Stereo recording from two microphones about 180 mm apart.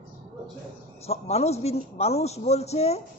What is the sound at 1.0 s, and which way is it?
A man's voice, 35° left (ahead or behind).